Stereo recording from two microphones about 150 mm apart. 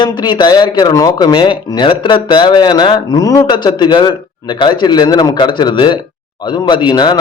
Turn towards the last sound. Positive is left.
turn(degrees=25)  # may be behind; listen again after turning